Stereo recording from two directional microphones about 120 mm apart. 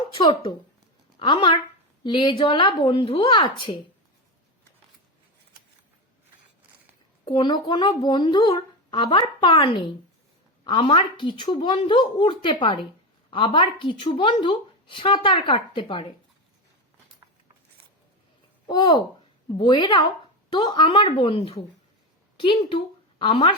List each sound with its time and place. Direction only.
1.2 s a woman's voice: 40° left (ahead or behind)
7.3 s a woman's voice: 40° left (ahead or behind)
18.7 s a woman's voice: 35° left (ahead or behind)